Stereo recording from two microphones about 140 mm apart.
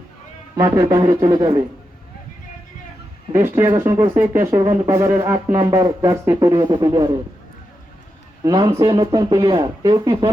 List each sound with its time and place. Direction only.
0.5 s speech: 25° right (ahead or behind)
3.3 s speech: 20° right (ahead or behind)
5.5 s speech: 30° right (ahead or behind)
8.4 s speech: 30° right (ahead or behind)